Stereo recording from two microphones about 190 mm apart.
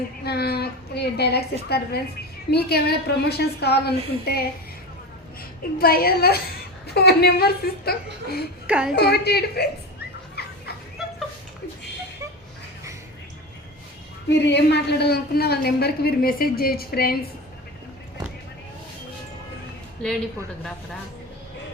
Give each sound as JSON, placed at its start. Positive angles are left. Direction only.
{"t": 0.3, "sound": "a woman's voice", "side_deg": 55}
{"t": 5.8, "sound": "a woman's voice", "side_deg": 50}
{"t": 8.6, "sound": "a woman's voice", "side_deg": -5}
{"t": 9.0, "sound": "a woman's voice", "side_deg": 60}
{"t": 10.4, "sound": "chicken", "side_deg": 55}
{"t": 14.3, "sound": "a woman's voice", "side_deg": 65}